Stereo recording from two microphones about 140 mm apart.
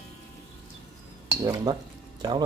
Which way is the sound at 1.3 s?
25° right (ahead or behind).